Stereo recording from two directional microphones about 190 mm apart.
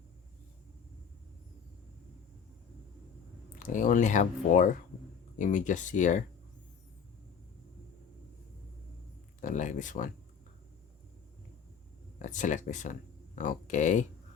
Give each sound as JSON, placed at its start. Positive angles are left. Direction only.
{"t": 3.6, "sound": "speech", "side_deg": 45}
{"t": 9.4, "sound": "speech", "side_deg": 40}
{"t": 12.2, "sound": "speech", "side_deg": 40}